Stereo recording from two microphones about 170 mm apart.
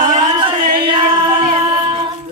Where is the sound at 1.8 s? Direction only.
30° right (ahead or behind).